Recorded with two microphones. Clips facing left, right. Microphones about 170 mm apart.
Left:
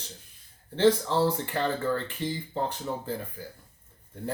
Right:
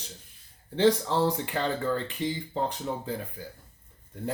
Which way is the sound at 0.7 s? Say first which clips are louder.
Left 1 dB; 15° right (ahead or behind).